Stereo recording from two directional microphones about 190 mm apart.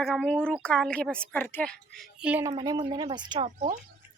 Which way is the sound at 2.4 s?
20° right (ahead or behind).